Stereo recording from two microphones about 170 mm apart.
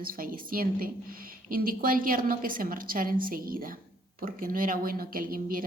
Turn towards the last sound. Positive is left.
turn(degrees=-55)  # may be behind; listen again after turning